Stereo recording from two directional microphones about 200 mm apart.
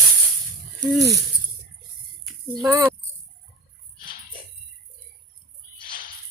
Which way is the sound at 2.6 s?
15° right (ahead or behind).